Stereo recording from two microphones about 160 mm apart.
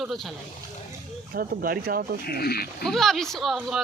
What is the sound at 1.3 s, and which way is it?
Speech, 70° right (ahead or behind).